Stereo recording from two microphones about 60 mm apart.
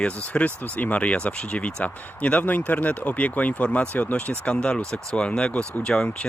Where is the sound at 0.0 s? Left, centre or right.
Left.